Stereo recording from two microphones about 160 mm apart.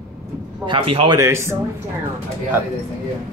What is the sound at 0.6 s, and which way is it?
Speech, 35° right (ahead or behind).